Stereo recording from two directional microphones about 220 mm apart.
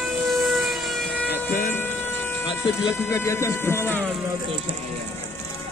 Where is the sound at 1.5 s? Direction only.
35° left (ahead or behind).